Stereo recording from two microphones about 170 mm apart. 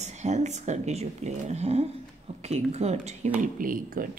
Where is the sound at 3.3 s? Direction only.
55° right (ahead or behind).